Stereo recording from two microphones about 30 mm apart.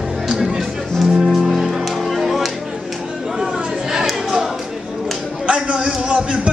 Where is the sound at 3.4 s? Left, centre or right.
Centre.